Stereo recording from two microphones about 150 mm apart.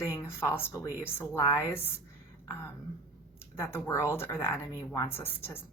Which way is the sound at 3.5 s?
15° left (ahead or behind).